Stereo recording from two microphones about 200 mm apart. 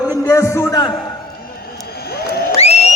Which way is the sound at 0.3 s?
15° left (ahead or behind).